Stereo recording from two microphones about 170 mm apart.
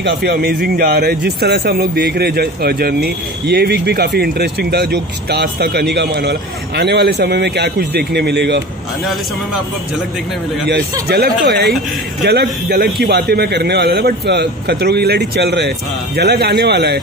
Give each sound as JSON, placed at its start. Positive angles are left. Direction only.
{"t": 0.0, "sound": "speech", "side_deg": -75}
{"t": 10.7, "sound": "speech", "side_deg": -70}